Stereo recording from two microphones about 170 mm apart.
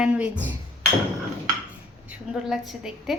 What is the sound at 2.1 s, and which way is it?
A woman's voice, 5° right (ahead or behind).